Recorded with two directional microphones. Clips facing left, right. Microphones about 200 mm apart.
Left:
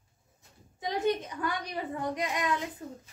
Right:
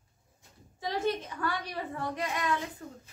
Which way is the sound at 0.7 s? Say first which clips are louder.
Left 2 dB; 20° left (ahead or behind).